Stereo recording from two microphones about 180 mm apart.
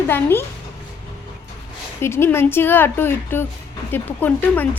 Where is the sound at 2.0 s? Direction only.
15° left (ahead or behind).